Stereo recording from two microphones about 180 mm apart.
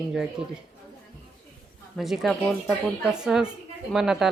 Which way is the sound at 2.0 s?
Centre (ahead or behind).